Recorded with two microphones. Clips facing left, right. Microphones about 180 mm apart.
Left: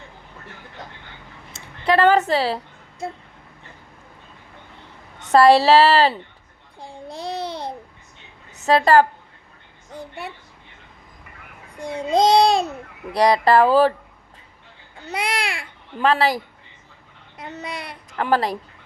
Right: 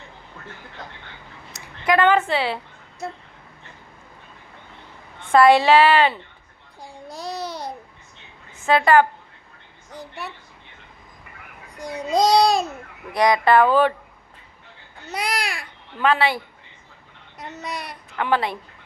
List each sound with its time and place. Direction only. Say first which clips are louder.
1.5 s a woman's voice: left 1 dB; 30° left (ahead or behind)
5.2 s speech: left 1 dB; 35° left (ahead or behind)
7.1 s babbling: left 2 dB; 30° left (ahead or behind)
8.6 s speech: left 1 dB; 35° left (ahead or behind)
11.8 s speech: left 2 dB; 25° left (ahead or behind)
15.2 s speech: left 1 dB; 30° left (ahead or behind)
17.3 s a child's voice: even; 25° left (ahead or behind)
18.3 s speech: left 2 dB; 40° left (ahead or behind)